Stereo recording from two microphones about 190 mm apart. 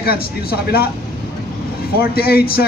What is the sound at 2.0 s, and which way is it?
Speech, 55° left (ahead or behind).